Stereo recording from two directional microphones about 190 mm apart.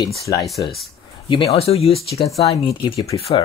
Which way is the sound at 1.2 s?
30° left (ahead or behind).